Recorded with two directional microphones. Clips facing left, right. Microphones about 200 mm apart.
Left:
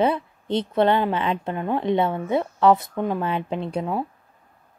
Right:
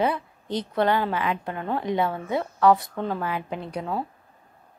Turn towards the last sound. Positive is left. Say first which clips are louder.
# left 4 dB
turn(degrees=20)  # may be behind; listen again after turning